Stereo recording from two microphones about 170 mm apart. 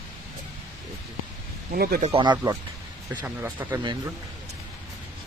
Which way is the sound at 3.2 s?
10° right (ahead or behind).